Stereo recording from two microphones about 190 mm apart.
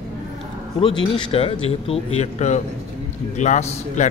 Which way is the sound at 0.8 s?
25° left (ahead or behind).